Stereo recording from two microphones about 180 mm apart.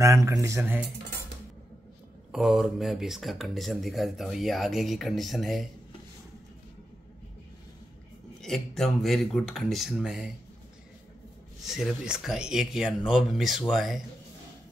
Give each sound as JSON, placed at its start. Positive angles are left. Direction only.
{"t": 0.0, "sound": "speech", "side_deg": -20}
{"t": 2.3, "sound": "speech", "side_deg": 0}
{"t": 8.4, "sound": "speech", "side_deg": 0}
{"t": 11.6, "sound": "speech", "side_deg": 0}